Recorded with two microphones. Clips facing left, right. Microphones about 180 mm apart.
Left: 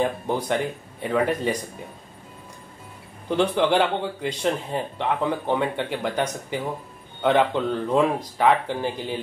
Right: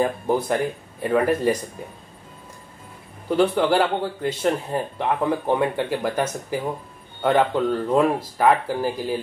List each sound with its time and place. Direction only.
0.0 s speech: 5° right (ahead or behind)
3.3 s speech: 5° right (ahead or behind)
7.2 s speech: 5° right (ahead or behind)